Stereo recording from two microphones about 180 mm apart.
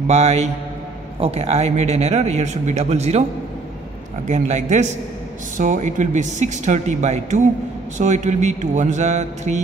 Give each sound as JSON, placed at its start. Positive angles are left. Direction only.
{"t": 0.0, "sound": "a man's voice", "side_deg": -35}
{"t": 4.3, "sound": "a man's voice", "side_deg": -40}